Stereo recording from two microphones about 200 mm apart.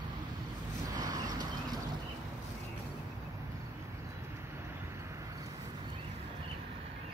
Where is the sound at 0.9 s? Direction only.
15° right (ahead or behind).